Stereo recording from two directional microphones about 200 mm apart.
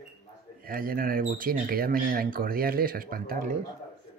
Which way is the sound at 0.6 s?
45° right (ahead or behind).